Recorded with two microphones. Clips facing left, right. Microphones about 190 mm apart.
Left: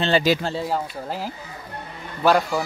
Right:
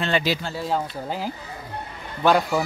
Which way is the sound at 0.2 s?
45° left (ahead or behind).